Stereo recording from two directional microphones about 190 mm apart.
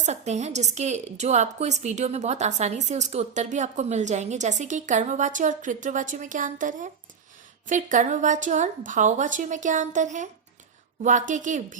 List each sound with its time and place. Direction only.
0.0 s a woman's voice: 35° right (ahead or behind)